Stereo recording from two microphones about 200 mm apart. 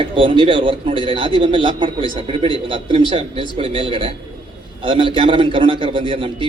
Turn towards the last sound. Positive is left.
turn(degrees=-25)  # may be behind; listen again after turning